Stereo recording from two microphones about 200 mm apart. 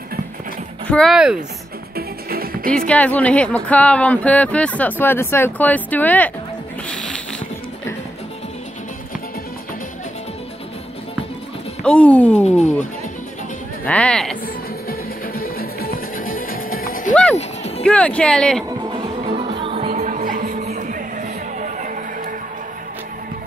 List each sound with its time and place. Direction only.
0.8 s speech: 5° left (ahead or behind)
2.0 s music: 50° right (ahead or behind)
2.9 s speech: 5° left (ahead or behind)
6.9 s music: 5° left (ahead or behind)
11.8 s speech: 5° left (ahead or behind)
12.4 s speech: 35° left (ahead or behind)
13.8 s speech: 5° left (ahead or behind)
14.9 s music: 45° left (ahead or behind)
17.1 s music: 5° left (ahead or behind)
17.4 s music: 30° left (ahead or behind)
17.8 s speech: 5° left (ahead or behind)
18.9 s music: 30° right (ahead or behind)